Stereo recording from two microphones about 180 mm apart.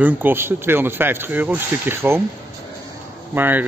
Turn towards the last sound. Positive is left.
turn(degrees=-10)  # may be behind; listen again after turning